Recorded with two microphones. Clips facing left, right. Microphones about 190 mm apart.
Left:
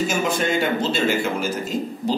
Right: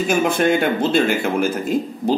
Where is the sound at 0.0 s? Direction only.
55° right (ahead or behind).